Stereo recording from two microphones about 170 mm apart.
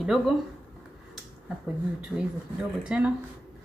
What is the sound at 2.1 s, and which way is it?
Speech, 5° right (ahead or behind).